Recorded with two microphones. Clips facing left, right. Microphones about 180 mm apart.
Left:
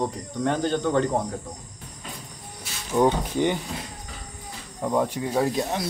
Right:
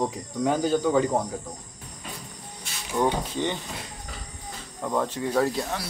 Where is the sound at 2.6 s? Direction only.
10° left (ahead or behind).